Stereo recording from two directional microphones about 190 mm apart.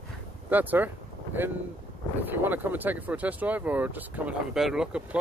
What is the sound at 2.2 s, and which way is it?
Speech, 10° right (ahead or behind).